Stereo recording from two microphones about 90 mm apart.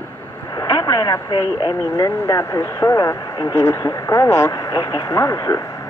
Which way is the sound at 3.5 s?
30° left (ahead or behind).